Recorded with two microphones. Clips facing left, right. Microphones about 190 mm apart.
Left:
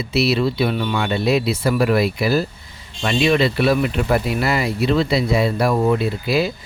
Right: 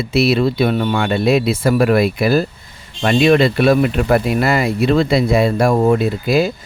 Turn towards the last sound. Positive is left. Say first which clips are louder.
# right 4 dB
turn(degrees=-45)  # may be behind; listen again after turning